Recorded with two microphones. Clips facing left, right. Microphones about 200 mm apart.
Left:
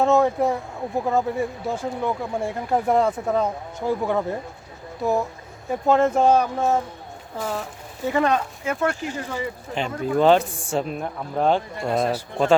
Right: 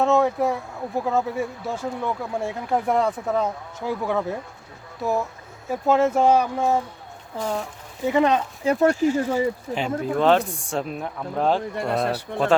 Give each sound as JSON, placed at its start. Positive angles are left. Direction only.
{"t": 0.0, "sound": "speech", "side_deg": 0}
{"t": 7.3, "sound": "speech", "side_deg": 5}
{"t": 8.1, "sound": "speech", "side_deg": -20}
{"t": 8.6, "sound": "speech", "side_deg": -35}
{"t": 9.7, "sound": "speech", "side_deg": -5}